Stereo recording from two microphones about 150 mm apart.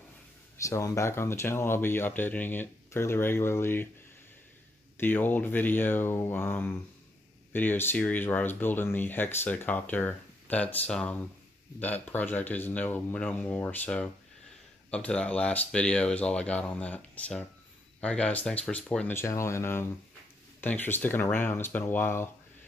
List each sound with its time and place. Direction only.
0.6 s speech: 20° left (ahead or behind)
4.9 s speech: 15° left (ahead or behind)